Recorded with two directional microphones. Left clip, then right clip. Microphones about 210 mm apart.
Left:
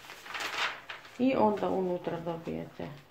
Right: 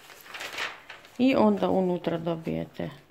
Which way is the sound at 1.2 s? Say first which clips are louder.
Right 4 dB; 45° right (ahead or behind).